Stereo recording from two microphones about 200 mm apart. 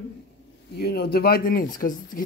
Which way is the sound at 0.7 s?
55° left (ahead or behind).